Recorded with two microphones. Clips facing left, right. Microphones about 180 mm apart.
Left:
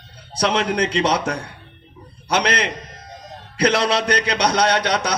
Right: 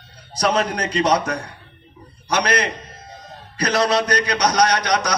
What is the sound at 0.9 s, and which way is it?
Speech, 30° left (ahead or behind).